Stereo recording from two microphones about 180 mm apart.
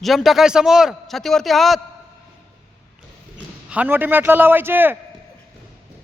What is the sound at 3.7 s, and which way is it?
A man's voice, 10° right (ahead or behind).